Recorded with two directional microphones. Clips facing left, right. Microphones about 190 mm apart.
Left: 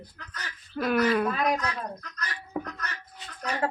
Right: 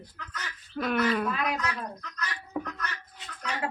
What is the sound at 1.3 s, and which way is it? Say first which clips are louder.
Speech: left 4 dB; 40° left (ahead or behind).